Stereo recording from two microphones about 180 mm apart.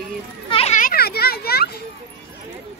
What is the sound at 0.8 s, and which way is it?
Children playing, 55° left (ahead or behind).